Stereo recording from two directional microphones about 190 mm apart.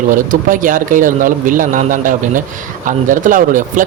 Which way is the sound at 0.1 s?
45° right (ahead or behind).